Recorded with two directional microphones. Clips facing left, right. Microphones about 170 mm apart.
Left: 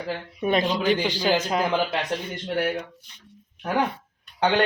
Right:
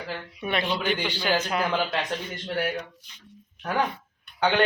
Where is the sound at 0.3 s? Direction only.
40° left (ahead or behind).